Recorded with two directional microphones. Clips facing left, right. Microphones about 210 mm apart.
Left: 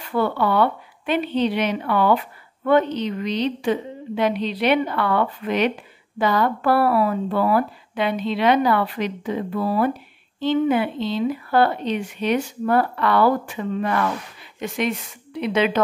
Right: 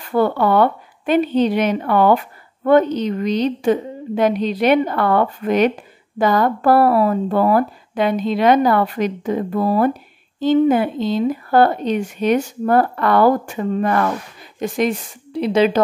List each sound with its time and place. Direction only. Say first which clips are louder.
0.0 s a woman's voice: right 5 dB; 45° right (ahead or behind)